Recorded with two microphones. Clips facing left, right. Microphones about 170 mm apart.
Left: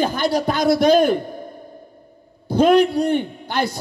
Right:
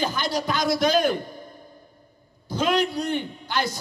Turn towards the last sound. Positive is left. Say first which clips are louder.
# left 4 dB
turn(degrees=55)  # may be behind; listen again after turning